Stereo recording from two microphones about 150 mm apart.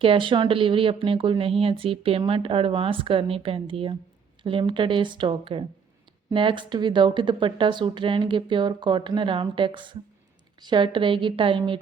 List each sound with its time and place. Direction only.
0.0 s speech: 35° right (ahead or behind)